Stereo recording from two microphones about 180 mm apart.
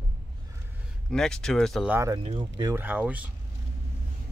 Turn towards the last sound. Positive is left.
turn(degrees=-10)  # may be behind; listen again after turning